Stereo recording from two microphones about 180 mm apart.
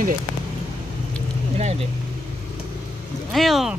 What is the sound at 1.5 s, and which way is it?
Speech, 35° right (ahead or behind).